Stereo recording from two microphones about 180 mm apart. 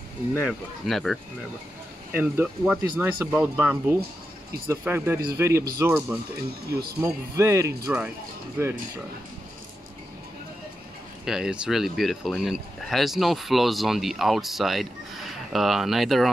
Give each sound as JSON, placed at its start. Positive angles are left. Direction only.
{"t": 0.4, "sound": "speech", "side_deg": 0}
{"t": 2.1, "sound": "speech", "side_deg": -10}
{"t": 6.7, "sound": "speech", "side_deg": -60}
{"t": 7.0, "sound": "speech", "side_deg": -15}
{"t": 11.2, "sound": "speech", "side_deg": -5}